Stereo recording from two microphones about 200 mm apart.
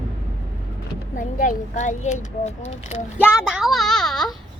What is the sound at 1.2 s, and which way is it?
A child's voice, 40° left (ahead or behind).